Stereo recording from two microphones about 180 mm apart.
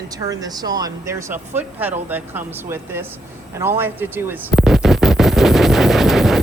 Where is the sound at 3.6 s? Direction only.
10° right (ahead or behind).